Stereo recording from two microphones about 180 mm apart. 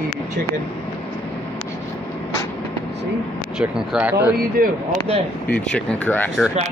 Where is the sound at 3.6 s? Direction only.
5° right (ahead or behind).